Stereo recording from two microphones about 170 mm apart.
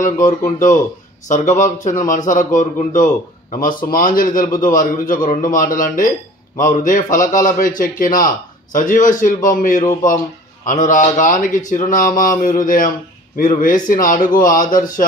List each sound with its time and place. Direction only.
0.0 s a man's voice: 50° left (ahead or behind)